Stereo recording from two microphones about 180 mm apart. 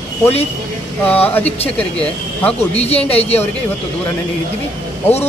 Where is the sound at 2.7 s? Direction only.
35° left (ahead or behind).